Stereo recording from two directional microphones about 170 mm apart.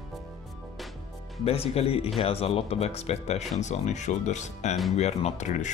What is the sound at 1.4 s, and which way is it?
Speech, 35° left (ahead or behind).